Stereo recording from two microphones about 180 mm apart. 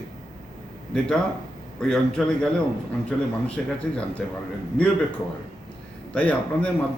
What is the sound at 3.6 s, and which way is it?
Speech, 5° left (ahead or behind).